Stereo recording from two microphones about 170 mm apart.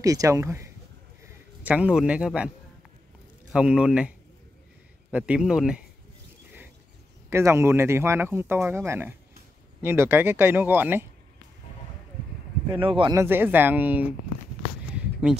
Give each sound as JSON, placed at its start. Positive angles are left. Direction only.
{"t": 0.0, "sound": "speech", "side_deg": -20}
{"t": 3.5, "sound": "speech", "side_deg": -5}
{"t": 5.1, "sound": "speech", "side_deg": -5}
{"t": 7.2, "sound": "speech", "side_deg": -15}
{"t": 12.7, "sound": "speech", "side_deg": -30}
{"t": 13.1, "sound": "speech", "side_deg": -15}